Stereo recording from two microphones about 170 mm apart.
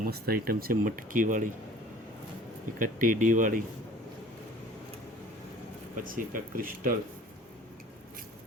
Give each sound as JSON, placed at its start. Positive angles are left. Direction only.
{"t": 0.0, "sound": "speech", "side_deg": -65}
{"t": 2.7, "sound": "speech", "side_deg": -50}
{"t": 6.0, "sound": "speech", "side_deg": -55}